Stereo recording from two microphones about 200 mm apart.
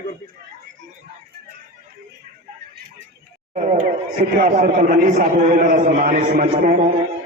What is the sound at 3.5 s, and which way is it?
A man's voice, 40° right (ahead or behind).